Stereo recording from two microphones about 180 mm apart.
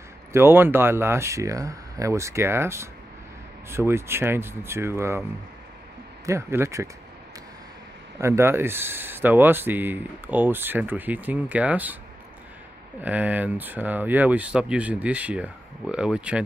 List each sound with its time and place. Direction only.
0.3 s speech: 15° right (ahead or behind)
6.2 s speech: 15° right (ahead or behind)
8.2 s speech: 15° right (ahead or behind)
13.0 s speech: 10° right (ahead or behind)